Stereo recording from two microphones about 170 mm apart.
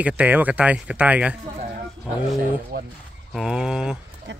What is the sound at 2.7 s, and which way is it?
Speech, 65° right (ahead or behind).